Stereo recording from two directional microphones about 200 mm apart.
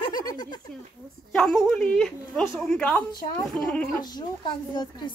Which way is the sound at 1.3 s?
Centre (ahead or behind).